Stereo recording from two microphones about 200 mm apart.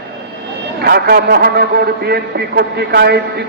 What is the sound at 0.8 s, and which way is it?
A man's voice, 55° right (ahead or behind).